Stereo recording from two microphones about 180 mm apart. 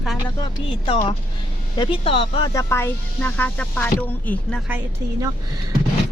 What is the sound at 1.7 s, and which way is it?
Speech, 25° left (ahead or behind).